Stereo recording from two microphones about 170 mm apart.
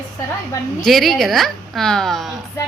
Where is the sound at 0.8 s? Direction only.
Centre (ahead or behind).